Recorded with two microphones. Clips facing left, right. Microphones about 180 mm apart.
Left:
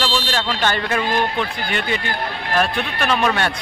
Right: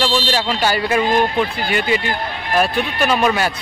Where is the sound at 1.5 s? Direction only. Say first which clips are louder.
Right 4 dB; 5° right (ahead or behind).